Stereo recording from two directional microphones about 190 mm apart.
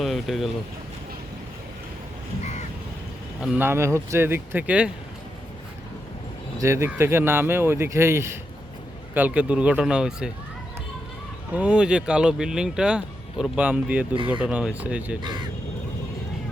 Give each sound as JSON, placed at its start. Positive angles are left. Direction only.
{"t": 0.0, "sound": "speech", "side_deg": 0}
{"t": 2.4, "sound": "crow", "side_deg": 35}
{"t": 3.4, "sound": "speech", "side_deg": -10}
{"t": 6.6, "sound": "speech", "side_deg": -15}
{"t": 11.5, "sound": "speech", "side_deg": -5}
{"t": 15.2, "sound": "speech", "side_deg": -25}